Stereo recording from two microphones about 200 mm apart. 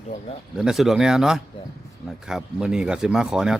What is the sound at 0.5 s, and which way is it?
A man's voice, centre (ahead or behind).